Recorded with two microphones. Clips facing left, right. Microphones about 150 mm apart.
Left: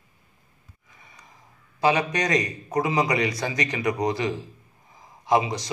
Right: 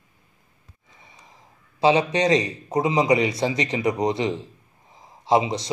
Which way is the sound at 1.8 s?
25° right (ahead or behind).